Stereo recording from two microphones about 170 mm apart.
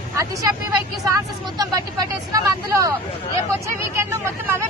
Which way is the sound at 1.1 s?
20° right (ahead or behind).